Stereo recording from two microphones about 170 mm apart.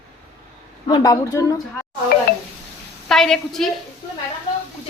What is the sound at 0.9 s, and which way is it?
Speech, 20° left (ahead or behind).